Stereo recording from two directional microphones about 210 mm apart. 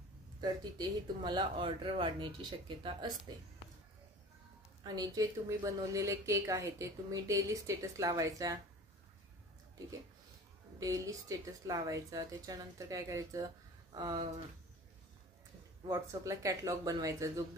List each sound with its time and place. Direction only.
0.4 s speech: 20° right (ahead or behind)
4.8 s speech: 20° right (ahead or behind)
10.8 s speech: 15° right (ahead or behind)
15.9 s speech: 15° right (ahead or behind)